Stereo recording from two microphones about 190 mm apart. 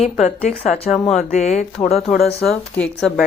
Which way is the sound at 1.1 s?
40° left (ahead or behind).